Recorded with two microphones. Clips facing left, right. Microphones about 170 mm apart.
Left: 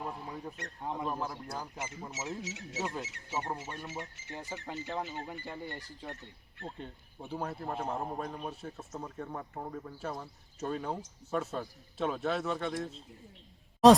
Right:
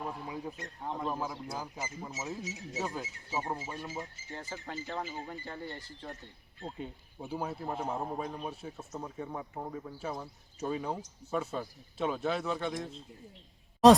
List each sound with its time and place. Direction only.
0.0 s bird: 5° right (ahead or behind)
0.8 s a man's voice: 5° left (ahead or behind)
1.1 s a man's voice: 5° right (ahead or behind)
2.4 s speech: 85° left
2.7 s a man's voice: centre (ahead or behind)
4.4 s speech: 15° left (ahead or behind)
6.6 s a man's voice: 5° right (ahead or behind)
13.8 s a man's voice: centre (ahead or behind)